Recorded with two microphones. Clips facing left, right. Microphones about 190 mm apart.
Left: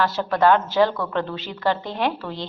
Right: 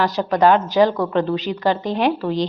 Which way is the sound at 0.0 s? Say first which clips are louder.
Right 3 dB; 15° right (ahead or behind).